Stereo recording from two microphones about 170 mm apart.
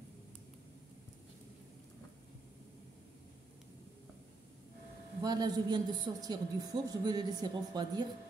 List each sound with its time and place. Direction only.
5.2 s a woman's voice: 25° right (ahead or behind)